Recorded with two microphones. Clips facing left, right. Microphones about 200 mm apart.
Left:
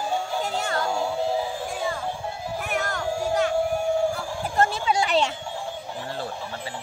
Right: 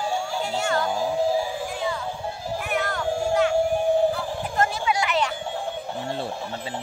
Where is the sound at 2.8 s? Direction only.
45° left (ahead or behind).